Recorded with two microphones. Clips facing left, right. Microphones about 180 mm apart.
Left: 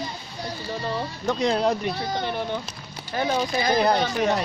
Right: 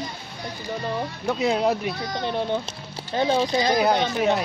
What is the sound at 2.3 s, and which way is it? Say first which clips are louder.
Speech: right 3 dB; 25° right (ahead or behind).